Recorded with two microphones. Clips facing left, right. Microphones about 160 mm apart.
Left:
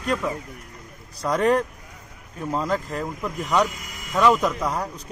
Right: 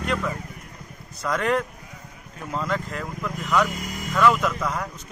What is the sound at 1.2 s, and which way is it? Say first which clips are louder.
Speech: left 3 dB; 35° left (ahead or behind).